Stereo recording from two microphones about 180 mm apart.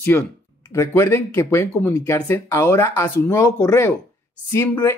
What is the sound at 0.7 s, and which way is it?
Speech, 15° left (ahead or behind).